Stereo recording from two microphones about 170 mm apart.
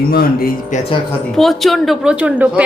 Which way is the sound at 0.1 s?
60° left (ahead or behind).